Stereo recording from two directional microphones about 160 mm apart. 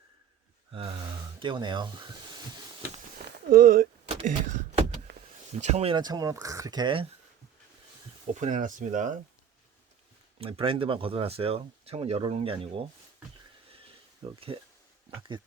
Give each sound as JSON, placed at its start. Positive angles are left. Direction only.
{"t": 0.7, "sound": "gasp", "side_deg": -30}
{"t": 1.4, "sound": "speech", "side_deg": -30}
{"t": 3.5, "sound": "a sound", "side_deg": -65}
{"t": 5.1, "sound": "power windows", "side_deg": -90}
{"t": 5.5, "sound": "speech", "side_deg": -45}
{"t": 5.9, "sound": "speech", "side_deg": -25}
{"t": 8.4, "sound": "speech", "side_deg": -50}
{"t": 10.3, "sound": "speech", "side_deg": -35}
{"t": 14.3, "sound": "speech", "side_deg": -35}